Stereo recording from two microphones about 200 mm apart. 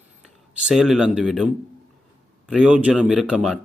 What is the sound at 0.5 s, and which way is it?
Speech, 5° right (ahead or behind).